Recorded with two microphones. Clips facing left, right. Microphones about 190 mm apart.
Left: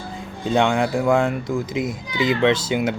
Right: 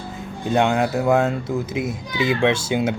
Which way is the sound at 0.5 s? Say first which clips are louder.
Even; 5° right (ahead or behind).